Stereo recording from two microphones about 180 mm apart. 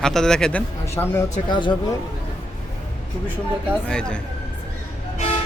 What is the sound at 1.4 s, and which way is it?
Speech, 25° left (ahead or behind).